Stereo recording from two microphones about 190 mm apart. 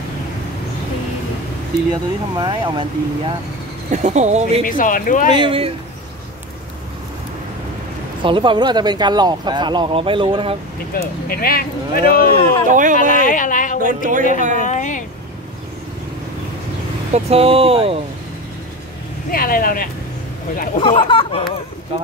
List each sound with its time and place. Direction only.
1.9 s speech: 25° right (ahead or behind)
3.9 s speech: 40° right (ahead or behind)
4.6 s speech: 45° left (ahead or behind)
5.3 s speech: 25° right (ahead or behind)
8.2 s speech: 25° right (ahead or behind)
11.0 s speech: 50° left (ahead or behind)
12.6 s speech: 45° right (ahead or behind)
12.9 s speech: 45° left (ahead or behind)
13.8 s speech: 45° right (ahead or behind)
14.6 s speech: 40° left (ahead or behind)
17.1 s speech: 30° right (ahead or behind)
19.3 s speech: 50° left (ahead or behind)
20.7 s speech: 30° left (ahead or behind)